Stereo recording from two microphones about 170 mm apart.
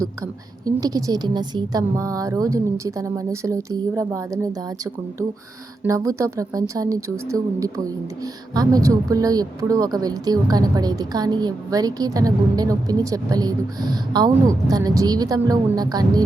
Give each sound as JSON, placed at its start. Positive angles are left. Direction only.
{"t": 0.6, "sound": "speech", "side_deg": -20}
{"t": 5.8, "sound": "speech", "side_deg": -20}